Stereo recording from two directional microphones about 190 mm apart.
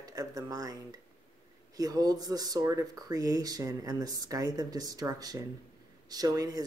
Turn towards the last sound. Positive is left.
turn(degrees=-20)  # may be behind; listen again after turning